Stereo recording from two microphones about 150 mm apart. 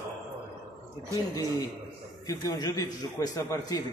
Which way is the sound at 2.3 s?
25° left (ahead or behind).